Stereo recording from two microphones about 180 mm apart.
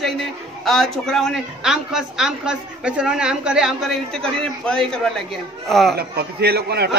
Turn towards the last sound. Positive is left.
turn(degrees=-65)  # may be behind; listen again after turning